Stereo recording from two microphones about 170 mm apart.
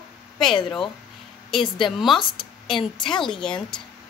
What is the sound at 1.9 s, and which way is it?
Speech, centre (ahead or behind).